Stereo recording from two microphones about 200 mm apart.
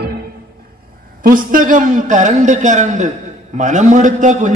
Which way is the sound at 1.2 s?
45° right (ahead or behind).